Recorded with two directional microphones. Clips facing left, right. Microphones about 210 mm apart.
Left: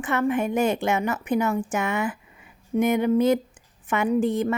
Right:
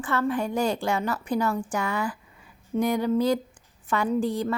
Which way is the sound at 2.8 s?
20° left (ahead or behind).